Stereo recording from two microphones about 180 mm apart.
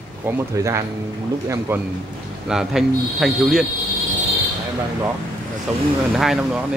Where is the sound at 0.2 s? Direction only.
15° right (ahead or behind).